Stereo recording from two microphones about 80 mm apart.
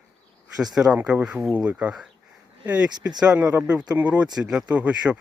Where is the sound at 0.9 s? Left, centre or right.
Centre.